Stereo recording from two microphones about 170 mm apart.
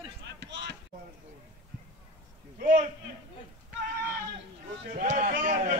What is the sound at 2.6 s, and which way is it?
Speech, 50° right (ahead or behind).